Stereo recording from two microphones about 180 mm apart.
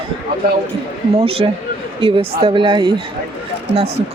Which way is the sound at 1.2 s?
35° right (ahead or behind).